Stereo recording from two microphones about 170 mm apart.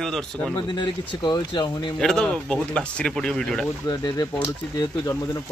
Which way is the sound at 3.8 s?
25° left (ahead or behind).